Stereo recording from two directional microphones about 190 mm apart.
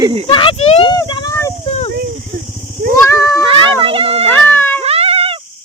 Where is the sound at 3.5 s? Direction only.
25° right (ahead or behind).